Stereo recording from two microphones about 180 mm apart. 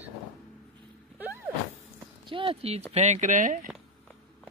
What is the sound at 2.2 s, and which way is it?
Speech, 30° right (ahead or behind).